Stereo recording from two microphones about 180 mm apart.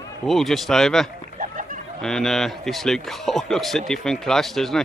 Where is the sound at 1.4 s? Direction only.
45° right (ahead or behind).